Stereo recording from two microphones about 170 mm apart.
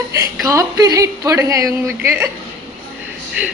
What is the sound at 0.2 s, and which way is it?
A woman's voice, 20° right (ahead or behind).